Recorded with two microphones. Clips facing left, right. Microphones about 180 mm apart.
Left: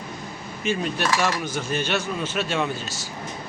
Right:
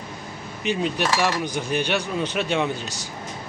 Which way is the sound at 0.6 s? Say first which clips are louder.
Right 1 dB; 15° right (ahead or behind).